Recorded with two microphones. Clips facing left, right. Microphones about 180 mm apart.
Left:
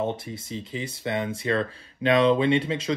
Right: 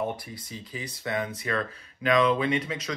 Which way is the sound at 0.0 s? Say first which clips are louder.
Left 3 dB; 25° left (ahead or behind).